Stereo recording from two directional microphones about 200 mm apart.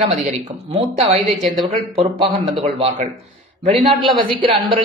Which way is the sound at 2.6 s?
35° right (ahead or behind).